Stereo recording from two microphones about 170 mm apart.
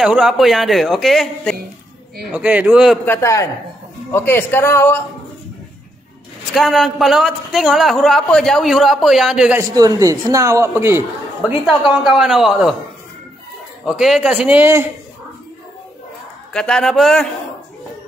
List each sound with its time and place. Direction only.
0.0 s a man's voice: 5° right (ahead or behind)
2.2 s speech: 5° right (ahead or behind)
3.1 s speech: 15° left (ahead or behind)
6.5 s a man's voice: centre (ahead or behind)
9.6 s a man's voice: 20° right (ahead or behind)
11.6 s a man's voice: centre (ahead or behind)
13.8 s a man's voice: centre (ahead or behind)
16.5 s a man's voice: 5° left (ahead or behind)